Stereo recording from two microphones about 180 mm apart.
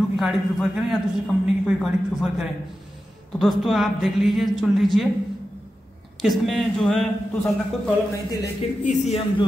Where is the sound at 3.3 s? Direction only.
Centre (ahead or behind).